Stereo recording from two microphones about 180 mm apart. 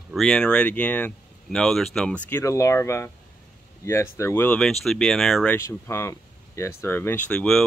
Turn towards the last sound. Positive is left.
turn(degrees=5)  # may be behind; listen again after turning